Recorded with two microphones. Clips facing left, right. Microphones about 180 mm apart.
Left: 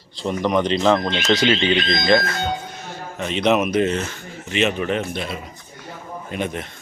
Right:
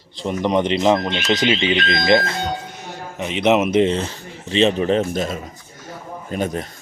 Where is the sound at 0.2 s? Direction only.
20° right (ahead or behind).